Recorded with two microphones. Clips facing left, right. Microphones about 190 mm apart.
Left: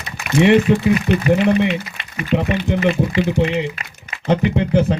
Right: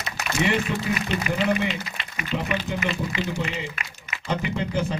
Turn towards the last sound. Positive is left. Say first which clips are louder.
# left 9 dB
turn(degrees=65)  # may be behind; listen again after turning